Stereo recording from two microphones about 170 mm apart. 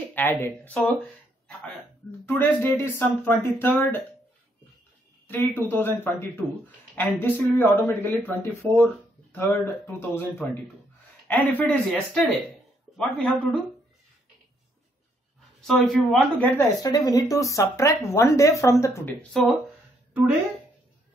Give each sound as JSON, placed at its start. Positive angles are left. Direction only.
{"t": 0.1, "sound": "a woman's voice", "side_deg": 10}
{"t": 2.2, "sound": "a woman's voice", "side_deg": 15}
{"t": 5.3, "sound": "a woman's voice", "side_deg": 10}
{"t": 15.6, "sound": "a woman's voice", "side_deg": 0}
{"t": 19.3, "sound": "speech", "side_deg": 0}